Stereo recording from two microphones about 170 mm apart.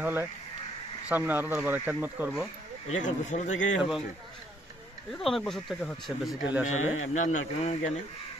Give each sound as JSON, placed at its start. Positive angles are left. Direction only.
{"t": 0.0, "sound": "speech", "side_deg": -15}
{"t": 2.9, "sound": "speech", "side_deg": 45}
{"t": 5.1, "sound": "speech", "side_deg": 5}
{"t": 7.0, "sound": "speech", "side_deg": 45}